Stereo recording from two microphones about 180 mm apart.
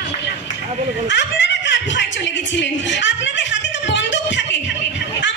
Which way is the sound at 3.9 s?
85° left.